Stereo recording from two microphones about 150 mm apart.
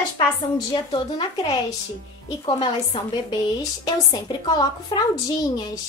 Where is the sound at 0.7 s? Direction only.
30° left (ahead or behind).